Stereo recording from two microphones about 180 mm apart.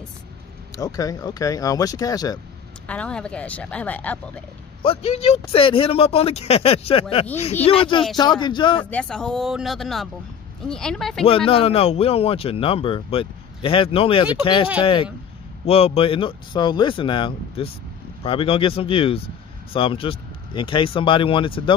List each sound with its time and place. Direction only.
0.7 s speech: 20° left (ahead or behind)
2.9 s speech: 5° left (ahead or behind)
4.8 s a man's voice: 35° left (ahead or behind)
8.9 s speech: 5° left (ahead or behind)
11.2 s a man's voice: 30° left (ahead or behind)